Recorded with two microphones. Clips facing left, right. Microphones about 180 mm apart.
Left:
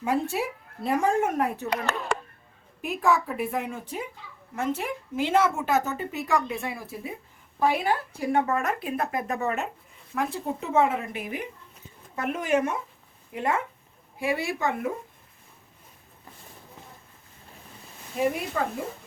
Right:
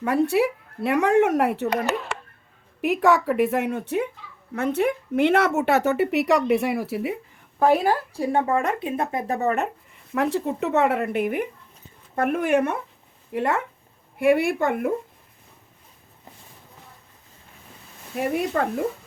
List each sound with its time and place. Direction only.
0.0 s speech: 65° right (ahead or behind)
2.8 s speech: 75° right (ahead or behind)
7.6 s a woman's voice: 45° right (ahead or behind)
8.1 s speech: 30° right (ahead or behind)
10.2 s speech: 70° right (ahead or behind); by 14.9 s 55° right (ahead or behind)
18.2 s speech: 60° right (ahead or behind)